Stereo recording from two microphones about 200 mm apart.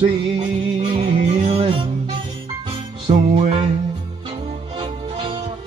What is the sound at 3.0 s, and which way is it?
Music, 30° right (ahead or behind).